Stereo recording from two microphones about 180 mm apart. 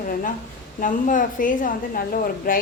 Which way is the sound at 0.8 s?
45° left (ahead or behind).